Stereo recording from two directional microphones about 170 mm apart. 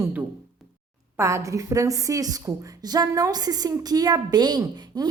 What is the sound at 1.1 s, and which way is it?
A woman's voice, 15° right (ahead or behind).